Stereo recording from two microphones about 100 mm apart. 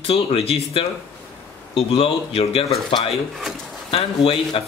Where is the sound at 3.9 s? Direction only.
70° left (ahead or behind).